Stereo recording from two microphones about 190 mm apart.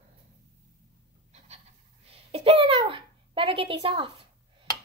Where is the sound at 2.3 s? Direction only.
30° right (ahead or behind).